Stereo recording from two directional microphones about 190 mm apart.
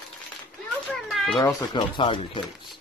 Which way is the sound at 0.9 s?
Centre (ahead or behind).